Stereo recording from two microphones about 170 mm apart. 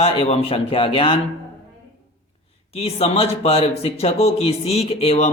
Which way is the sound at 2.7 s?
35° left (ahead or behind).